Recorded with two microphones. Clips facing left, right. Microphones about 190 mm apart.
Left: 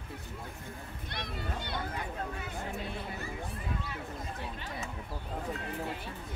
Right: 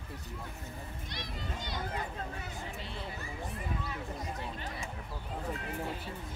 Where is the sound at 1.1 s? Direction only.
60° left (ahead or behind).